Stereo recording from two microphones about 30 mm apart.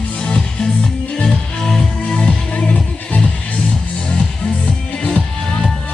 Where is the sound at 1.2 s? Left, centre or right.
Left.